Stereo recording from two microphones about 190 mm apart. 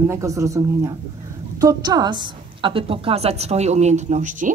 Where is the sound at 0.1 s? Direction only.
15° right (ahead or behind); by 4.6 s 40° right (ahead or behind).